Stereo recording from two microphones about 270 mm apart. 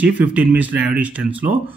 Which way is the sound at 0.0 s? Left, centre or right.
Centre.